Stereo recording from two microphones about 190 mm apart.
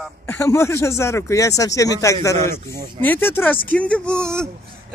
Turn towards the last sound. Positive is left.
turn(degrees=5)  # may be behind; listen again after turning